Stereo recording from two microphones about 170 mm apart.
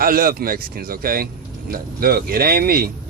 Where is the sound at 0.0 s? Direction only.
60° right (ahead or behind).